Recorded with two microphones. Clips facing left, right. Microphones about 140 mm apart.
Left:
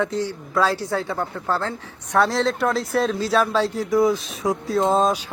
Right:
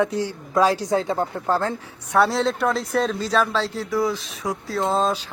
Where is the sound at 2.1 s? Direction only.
Centre (ahead or behind).